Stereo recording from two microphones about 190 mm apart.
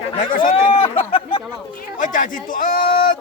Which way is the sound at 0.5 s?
30° left (ahead or behind).